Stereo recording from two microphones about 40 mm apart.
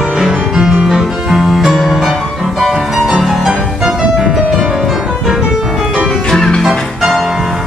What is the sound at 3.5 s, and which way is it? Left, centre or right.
Music, centre.